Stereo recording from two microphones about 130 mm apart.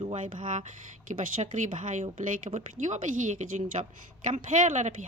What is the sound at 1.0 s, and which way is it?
Speech, 85° right.